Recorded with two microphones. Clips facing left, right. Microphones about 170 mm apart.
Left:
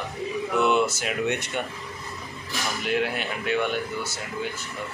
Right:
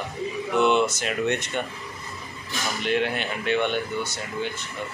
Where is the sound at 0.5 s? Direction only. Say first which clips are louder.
Right 2 dB; 5° left (ahead or behind).